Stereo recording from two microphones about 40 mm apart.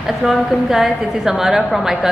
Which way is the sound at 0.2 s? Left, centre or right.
Centre.